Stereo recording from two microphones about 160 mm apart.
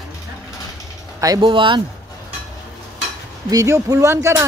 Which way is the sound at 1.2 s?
25° right (ahead or behind).